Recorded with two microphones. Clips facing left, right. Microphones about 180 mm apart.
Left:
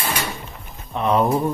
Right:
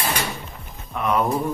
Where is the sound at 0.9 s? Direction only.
30° left (ahead or behind).